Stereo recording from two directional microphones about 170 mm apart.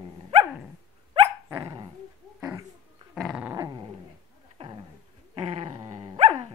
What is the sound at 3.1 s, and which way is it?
Dog, 5° right (ahead or behind).